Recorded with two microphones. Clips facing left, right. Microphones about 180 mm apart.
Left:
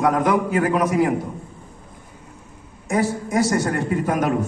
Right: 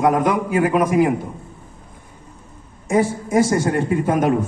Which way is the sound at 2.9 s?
20° right (ahead or behind).